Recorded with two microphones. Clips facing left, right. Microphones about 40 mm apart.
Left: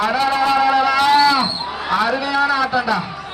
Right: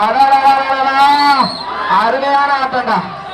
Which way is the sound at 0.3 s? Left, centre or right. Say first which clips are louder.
Right 6 dB; centre.